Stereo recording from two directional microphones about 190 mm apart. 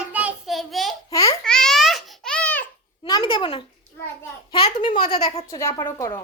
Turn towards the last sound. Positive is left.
turn(degrees=10)  # may be behind; listen again after turning